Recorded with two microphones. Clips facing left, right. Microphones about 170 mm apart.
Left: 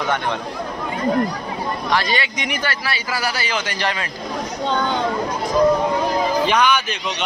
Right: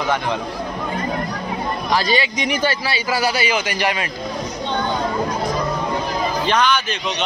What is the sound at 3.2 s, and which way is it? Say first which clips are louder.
Speech: right 5 dB; 20° right (ahead or behind).